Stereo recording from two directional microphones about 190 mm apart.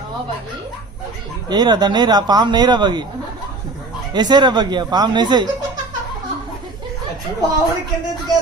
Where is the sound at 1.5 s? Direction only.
20° right (ahead or behind).